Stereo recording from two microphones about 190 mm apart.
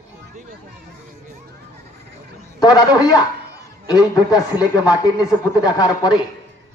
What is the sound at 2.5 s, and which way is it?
A woman's voice, 20° left (ahead or behind).